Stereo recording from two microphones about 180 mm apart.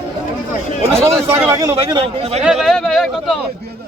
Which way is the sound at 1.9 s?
35° right (ahead or behind).